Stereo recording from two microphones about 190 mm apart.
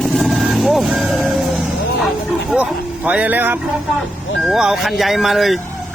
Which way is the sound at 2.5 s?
5° right (ahead or behind).